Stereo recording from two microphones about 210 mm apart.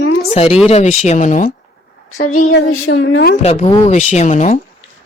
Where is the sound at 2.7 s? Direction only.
75° left (ahead or behind).